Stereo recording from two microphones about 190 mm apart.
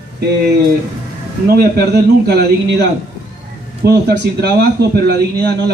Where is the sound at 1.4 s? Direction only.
55° right (ahead or behind).